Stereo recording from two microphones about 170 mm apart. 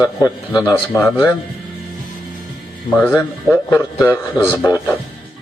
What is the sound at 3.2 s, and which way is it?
A man's voice, 15° left (ahead or behind).